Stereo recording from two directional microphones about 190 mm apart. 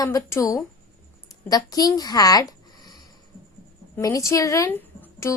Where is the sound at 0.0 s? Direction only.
15° left (ahead or behind).